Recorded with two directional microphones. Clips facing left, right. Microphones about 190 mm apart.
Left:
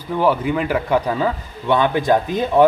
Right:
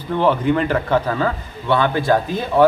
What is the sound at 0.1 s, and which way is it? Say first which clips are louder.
A man's voice: right 1 dB; 10° left (ahead or behind).